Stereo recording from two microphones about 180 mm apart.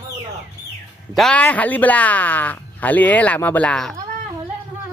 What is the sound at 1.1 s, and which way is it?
Speech, 5° left (ahead or behind).